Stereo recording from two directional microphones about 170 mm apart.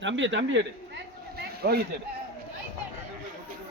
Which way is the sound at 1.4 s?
70° right (ahead or behind).